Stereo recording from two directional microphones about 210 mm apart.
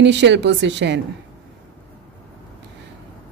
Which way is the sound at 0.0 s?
55° right (ahead or behind).